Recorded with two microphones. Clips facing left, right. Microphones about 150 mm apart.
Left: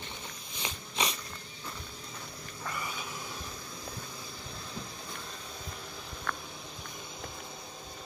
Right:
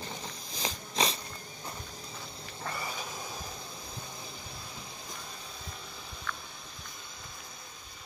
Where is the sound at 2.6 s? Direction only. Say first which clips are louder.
Right 1 dB; 35° right (ahead or behind).